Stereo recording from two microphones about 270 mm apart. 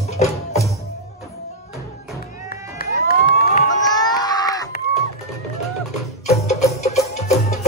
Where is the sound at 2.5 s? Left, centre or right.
Left.